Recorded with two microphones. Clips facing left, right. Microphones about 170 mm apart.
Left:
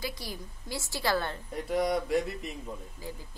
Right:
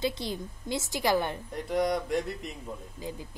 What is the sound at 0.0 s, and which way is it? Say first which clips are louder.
A woman's voice: right 7 dB; 25° right (ahead or behind).